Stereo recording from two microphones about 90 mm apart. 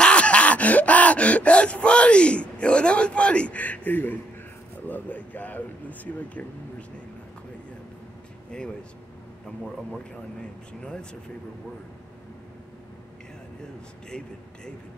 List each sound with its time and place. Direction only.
0.0 s gasp: 15° left (ahead or behind)
4.8 s speech: 20° left (ahead or behind)
8.5 s speech: 10° left (ahead or behind)
10.8 s speech: 10° left (ahead or behind)
14.1 s speech: 10° left (ahead or behind)